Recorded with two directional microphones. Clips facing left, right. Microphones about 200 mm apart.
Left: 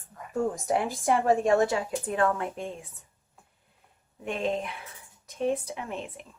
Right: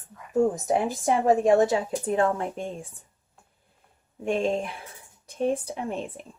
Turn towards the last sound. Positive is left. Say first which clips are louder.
# right 4 dB
turn(degrees=-35)  # may be behind; listen again after turning